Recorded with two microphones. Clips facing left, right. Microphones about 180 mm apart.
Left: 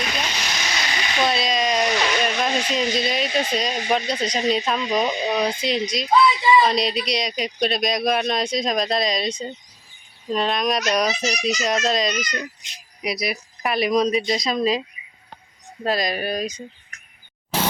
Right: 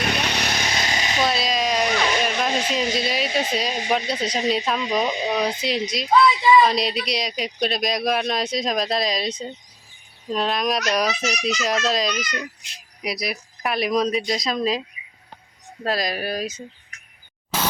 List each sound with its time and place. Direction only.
0.0 s vehicle: 60° right (ahead or behind); by 1.2 s 40° right (ahead or behind)
1.2 s speech: centre (ahead or behind)